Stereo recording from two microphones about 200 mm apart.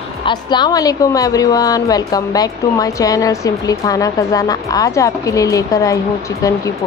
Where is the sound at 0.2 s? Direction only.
20° left (ahead or behind).